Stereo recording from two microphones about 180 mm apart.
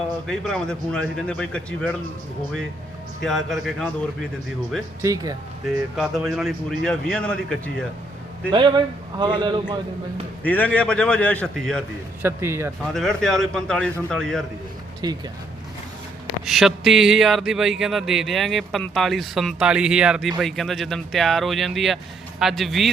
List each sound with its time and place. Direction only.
0.3 s speech: 5° left (ahead or behind)
3.2 s speech: centre (ahead or behind)
5.0 s a man's voice: 20° right (ahead or behind)
6.0 s speech: centre (ahead or behind)
8.5 s a man's voice: 25° right (ahead or behind)
10.4 s speech: 10° left (ahead or behind)
12.2 s speech: 15° right (ahead or behind)
12.8 s speech: centre (ahead or behind)
15.0 s a man's voice: 20° right (ahead or behind)
16.5 s speech: centre (ahead or behind)